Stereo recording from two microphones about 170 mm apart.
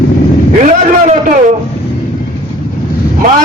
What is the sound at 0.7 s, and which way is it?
Speech, 45° right (ahead or behind).